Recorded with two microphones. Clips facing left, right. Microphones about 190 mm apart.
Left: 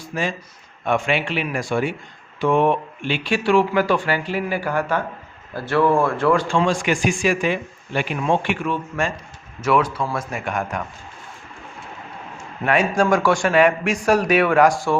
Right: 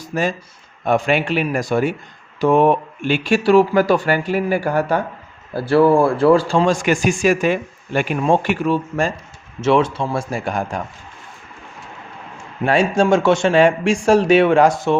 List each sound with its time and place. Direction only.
0.0 s a man's voice: 40° right (ahead or behind)
12.6 s a man's voice: 30° right (ahead or behind)